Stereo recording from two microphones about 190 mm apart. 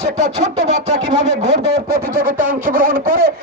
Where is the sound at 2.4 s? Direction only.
10° right (ahead or behind).